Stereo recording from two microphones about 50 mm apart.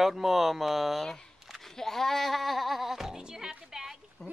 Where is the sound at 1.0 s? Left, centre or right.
Centre.